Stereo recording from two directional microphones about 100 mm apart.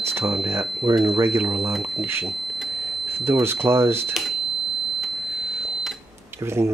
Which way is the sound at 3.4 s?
25° right (ahead or behind).